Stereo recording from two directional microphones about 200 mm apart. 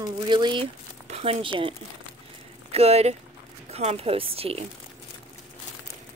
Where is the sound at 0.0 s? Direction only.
20° right (ahead or behind).